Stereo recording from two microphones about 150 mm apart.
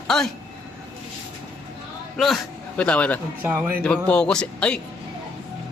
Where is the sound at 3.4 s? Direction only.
10° right (ahead or behind).